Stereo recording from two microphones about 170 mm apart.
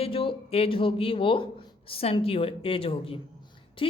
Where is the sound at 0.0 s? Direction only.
30° left (ahead or behind).